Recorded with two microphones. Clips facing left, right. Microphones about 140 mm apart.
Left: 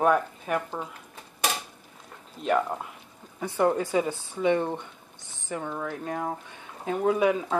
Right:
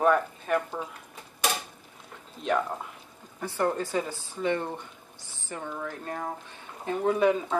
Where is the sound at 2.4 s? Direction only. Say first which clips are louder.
Left 2 dB; 5° left (ahead or behind).